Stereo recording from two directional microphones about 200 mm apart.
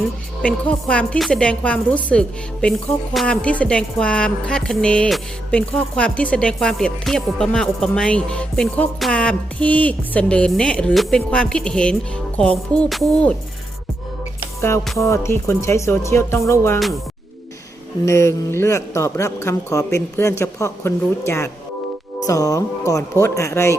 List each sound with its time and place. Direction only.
0.4 s a woman's voice: 5° left (ahead or behind)
14.9 s speech: 15° left (ahead or behind)
18.0 s speech: 15° left (ahead or behind)